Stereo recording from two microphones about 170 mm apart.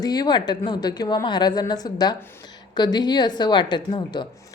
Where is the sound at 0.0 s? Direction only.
25° left (ahead or behind).